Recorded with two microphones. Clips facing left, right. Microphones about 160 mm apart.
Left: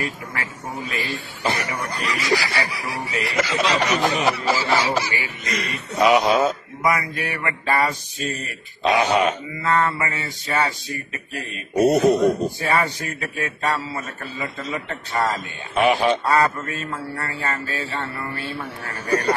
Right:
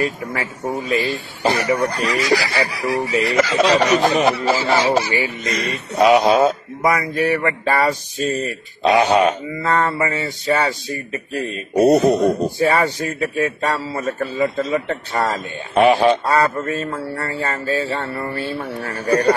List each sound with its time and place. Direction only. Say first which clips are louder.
0.0 s speech: right 7 dB; 25° right (ahead or behind)
4.0 s speech: right 5 dB; 60° right (ahead or behind)
4.3 s speech: right 4 dB; 25° right (ahead or behind)
4.6 s speech: right 4 dB; 45° right (ahead or behind)
5.1 s mantra: right 6 dB; 35° right (ahead or behind)